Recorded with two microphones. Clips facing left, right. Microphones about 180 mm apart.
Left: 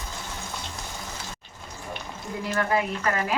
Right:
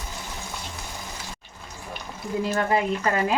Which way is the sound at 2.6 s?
25° right (ahead or behind).